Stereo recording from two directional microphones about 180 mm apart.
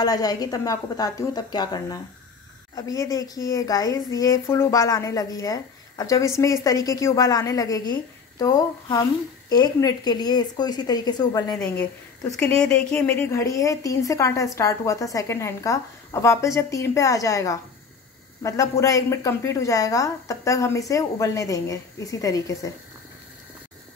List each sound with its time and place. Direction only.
0.0 s a woman's voice: 20° left (ahead or behind)
11.5 s a woman's voice: 5° left (ahead or behind)